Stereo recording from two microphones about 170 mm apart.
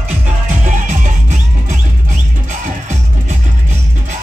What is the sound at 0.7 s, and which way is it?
Music, 50° right (ahead or behind).